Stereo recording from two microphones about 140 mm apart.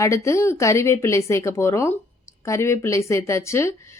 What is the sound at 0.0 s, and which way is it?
Speech, 20° left (ahead or behind).